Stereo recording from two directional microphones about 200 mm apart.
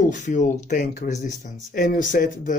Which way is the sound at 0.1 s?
35° left (ahead or behind).